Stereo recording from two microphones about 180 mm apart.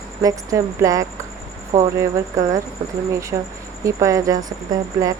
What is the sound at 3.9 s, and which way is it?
Speech, 15° right (ahead or behind).